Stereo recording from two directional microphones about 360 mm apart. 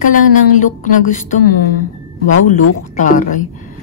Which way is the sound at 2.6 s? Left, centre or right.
Left.